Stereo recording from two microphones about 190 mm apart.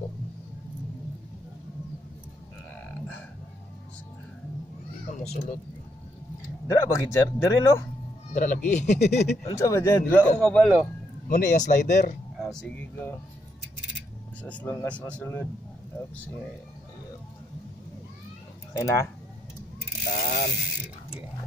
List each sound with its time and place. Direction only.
6.7 s a man's voice: 15° left (ahead or behind)
8.3 s speech: 40° left (ahead or behind)
9.4 s a man's voice: 15° left (ahead or behind)
11.2 s speech: 40° left (ahead or behind)
12.4 s speech: centre (ahead or behind)
14.4 s a man's voice: 10° left (ahead or behind)
18.7 s speech: 20° left (ahead or behind)
20.1 s mechanisms: 45° left (ahead or behind)